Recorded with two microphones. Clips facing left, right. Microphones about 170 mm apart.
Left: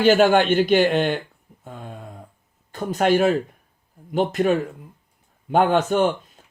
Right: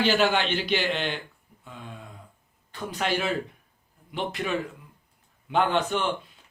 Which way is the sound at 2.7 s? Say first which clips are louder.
Left 9 dB; 45° left (ahead or behind).